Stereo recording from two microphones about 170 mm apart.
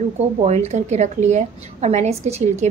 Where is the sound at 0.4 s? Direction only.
40° right (ahead or behind).